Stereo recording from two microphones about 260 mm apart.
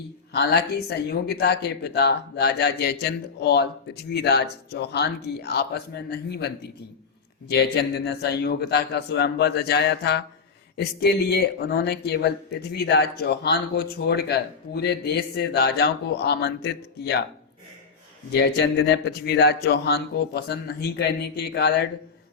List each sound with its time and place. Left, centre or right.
0.3 s speech: left
18.3 s speech: left